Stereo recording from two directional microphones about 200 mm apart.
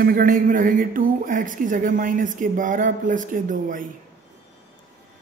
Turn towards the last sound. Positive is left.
turn(degrees=-40)  # may be behind; listen again after turning